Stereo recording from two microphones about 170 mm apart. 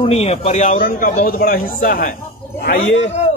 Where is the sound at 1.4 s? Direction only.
60° left (ahead or behind).